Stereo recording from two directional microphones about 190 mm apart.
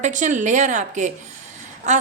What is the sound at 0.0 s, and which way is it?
A woman's voice, 40° right (ahead or behind).